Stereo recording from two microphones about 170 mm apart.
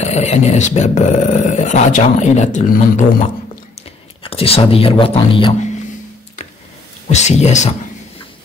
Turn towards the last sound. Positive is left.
turn(degrees=45)  # may be behind; listen again after turning